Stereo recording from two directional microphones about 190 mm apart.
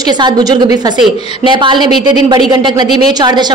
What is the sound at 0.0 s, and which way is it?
Speech, 20° right (ahead or behind).